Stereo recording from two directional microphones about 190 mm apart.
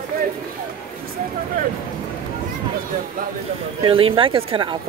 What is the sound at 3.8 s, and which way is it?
Speech, 30° right (ahead or behind).